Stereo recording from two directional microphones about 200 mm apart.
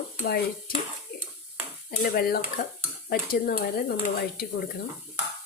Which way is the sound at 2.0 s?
50° left (ahead or behind).